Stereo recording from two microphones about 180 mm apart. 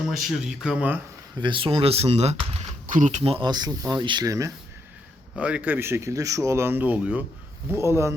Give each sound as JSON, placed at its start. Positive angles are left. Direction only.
{"t": 0.1, "sound": "speech", "side_deg": 0}
{"t": 1.4, "sound": "speech", "side_deg": -25}
{"t": 2.8, "sound": "speech", "side_deg": -45}
{"t": 5.4, "sound": "speech", "side_deg": -5}